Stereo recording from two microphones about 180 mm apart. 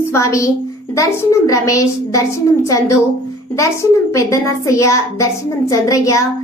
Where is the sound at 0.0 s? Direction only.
15° left (ahead or behind).